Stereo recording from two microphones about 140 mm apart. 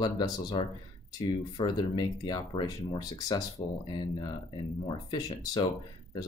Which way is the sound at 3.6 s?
40° left (ahead or behind).